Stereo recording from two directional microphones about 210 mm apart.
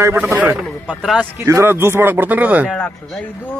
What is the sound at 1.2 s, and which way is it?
Speech, 15° right (ahead or behind).